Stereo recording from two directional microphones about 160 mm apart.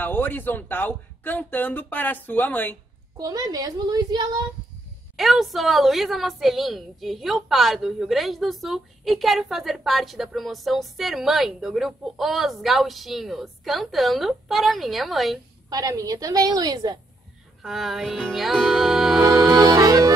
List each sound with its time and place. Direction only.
0.0 s speech: 10° left (ahead or behind)
3.2 s a woman's voice: 25° right (ahead or behind)
5.1 s a woman's voice: centre (ahead or behind)
15.7 s a woman's voice: 20° right (ahead or behind)
17.6 s music: centre (ahead or behind)
19.2 s music: 25° right (ahead or behind)